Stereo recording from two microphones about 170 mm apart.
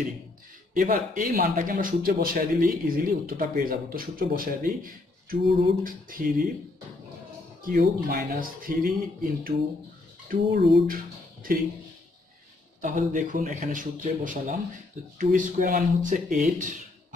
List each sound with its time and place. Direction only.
0.7 s speech: 55° right (ahead or behind)
7.6 s speech: 55° right (ahead or behind)
12.8 s speech: 50° right (ahead or behind)